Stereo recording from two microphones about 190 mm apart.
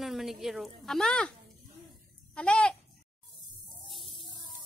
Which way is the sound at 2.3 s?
5° left (ahead or behind).